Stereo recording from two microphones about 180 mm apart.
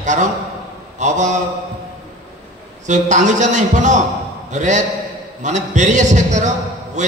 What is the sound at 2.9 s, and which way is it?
A man's voice, 40° right (ahead or behind).